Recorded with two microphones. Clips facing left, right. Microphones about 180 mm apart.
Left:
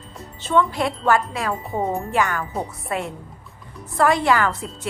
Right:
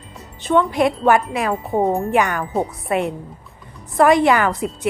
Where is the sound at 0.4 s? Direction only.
15° right (ahead or behind).